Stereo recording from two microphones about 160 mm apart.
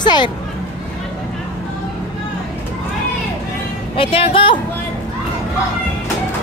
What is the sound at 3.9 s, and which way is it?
Speech, 35° left (ahead or behind).